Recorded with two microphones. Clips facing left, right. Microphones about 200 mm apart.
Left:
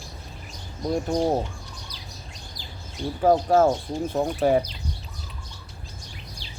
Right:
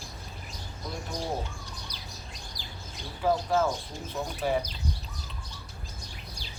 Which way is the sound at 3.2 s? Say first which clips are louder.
Left 7 dB; 45° left (ahead or behind).